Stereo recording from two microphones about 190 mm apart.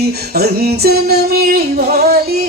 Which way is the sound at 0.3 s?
55° right (ahead or behind).